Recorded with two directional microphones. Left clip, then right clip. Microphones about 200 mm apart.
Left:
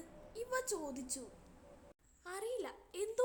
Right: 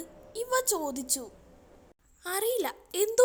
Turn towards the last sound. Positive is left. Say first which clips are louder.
# right 13 dB
turn(degrees=-35)  # may be behind; listen again after turning